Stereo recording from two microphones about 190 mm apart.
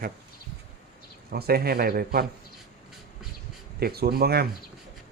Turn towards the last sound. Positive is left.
turn(degrees=-55)  # may be behind; listen again after turning